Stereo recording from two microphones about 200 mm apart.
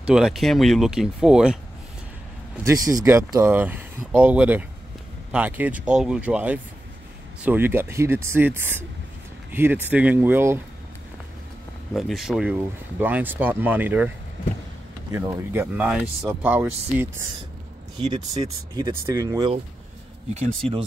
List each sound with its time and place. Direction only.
0.0 s speech: 5° right (ahead or behind)
2.5 s speech: 15° right (ahead or behind)
11.9 s speech: centre (ahead or behind)
15.6 s speech: centre (ahead or behind)
18.1 s speech: 25° right (ahead or behind)